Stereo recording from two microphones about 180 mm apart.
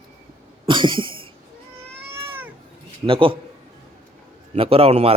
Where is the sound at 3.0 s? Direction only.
30° right (ahead or behind).